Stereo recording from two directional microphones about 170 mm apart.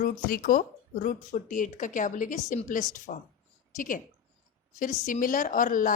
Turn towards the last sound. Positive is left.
turn(degrees=50)  # may be behind; listen again after turning